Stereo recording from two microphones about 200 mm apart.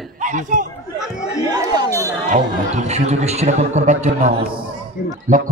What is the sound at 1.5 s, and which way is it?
Speech, 20° right (ahead or behind).